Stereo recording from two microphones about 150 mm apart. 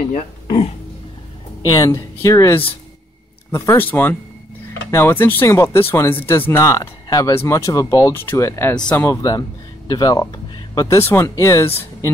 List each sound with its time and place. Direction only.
1.6 s speech: 25° left (ahead or behind)